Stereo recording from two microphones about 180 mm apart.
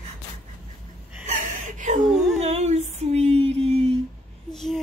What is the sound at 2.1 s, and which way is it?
Dog, centre (ahead or behind).